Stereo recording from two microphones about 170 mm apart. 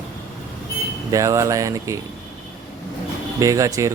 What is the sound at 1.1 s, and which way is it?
Speech, 20° right (ahead or behind).